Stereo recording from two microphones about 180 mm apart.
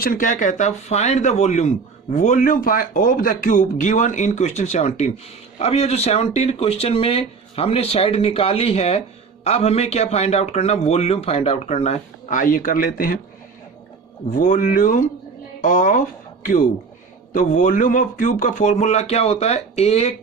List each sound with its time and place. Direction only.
0.0 s speech: 50° left (ahead or behind)
14.3 s speech: 50° left (ahead or behind)